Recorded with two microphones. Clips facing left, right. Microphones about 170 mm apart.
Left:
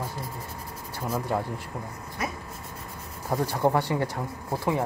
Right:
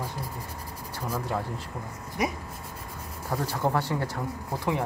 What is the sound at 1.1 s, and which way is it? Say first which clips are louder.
Speech: left 3 dB; 15° left (ahead or behind).